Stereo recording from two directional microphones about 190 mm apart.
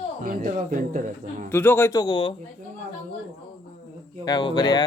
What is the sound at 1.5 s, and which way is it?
Speech, 10° left (ahead or behind).